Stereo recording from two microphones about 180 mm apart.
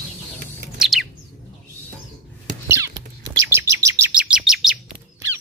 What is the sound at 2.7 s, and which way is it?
Rodents, 15° right (ahead or behind).